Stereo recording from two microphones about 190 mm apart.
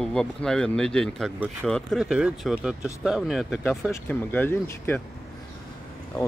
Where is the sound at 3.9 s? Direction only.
10° left (ahead or behind).